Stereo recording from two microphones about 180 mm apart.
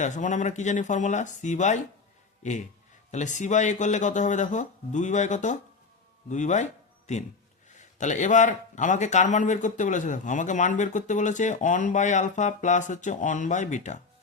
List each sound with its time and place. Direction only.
0.0 s speech: 45° left (ahead or behind)